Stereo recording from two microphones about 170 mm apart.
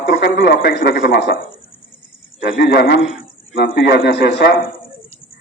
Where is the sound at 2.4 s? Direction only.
65° left (ahead or behind).